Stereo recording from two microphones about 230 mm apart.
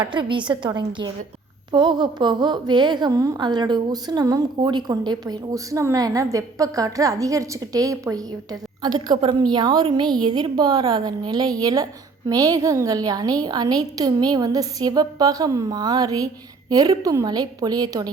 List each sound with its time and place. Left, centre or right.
0.1 s a woman's voice: right